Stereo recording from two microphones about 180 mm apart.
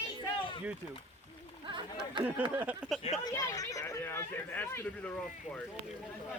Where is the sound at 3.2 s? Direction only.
20° left (ahead or behind).